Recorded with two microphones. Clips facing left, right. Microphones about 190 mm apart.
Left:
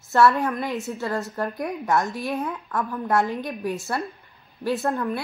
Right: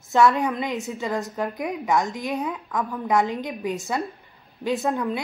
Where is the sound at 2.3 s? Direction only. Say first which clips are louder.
Right 1 dB; centre (ahead or behind).